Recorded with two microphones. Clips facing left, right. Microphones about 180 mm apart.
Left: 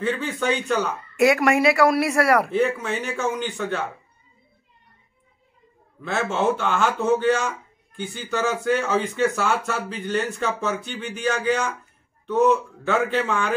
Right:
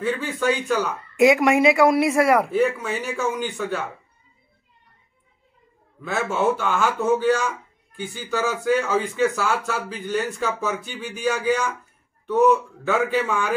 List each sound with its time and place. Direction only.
0.0 s a man's voice: 5° right (ahead or behind)
1.1 s speech: 15° right (ahead or behind)
2.5 s a man's voice: 5° right (ahead or behind)
6.0 s speech: 5° right (ahead or behind)